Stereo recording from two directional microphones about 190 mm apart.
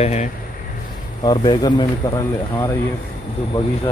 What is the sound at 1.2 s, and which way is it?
Speech, 25° left (ahead or behind).